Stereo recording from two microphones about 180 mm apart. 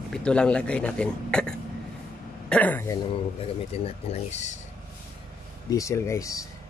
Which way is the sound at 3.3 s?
35° left (ahead or behind).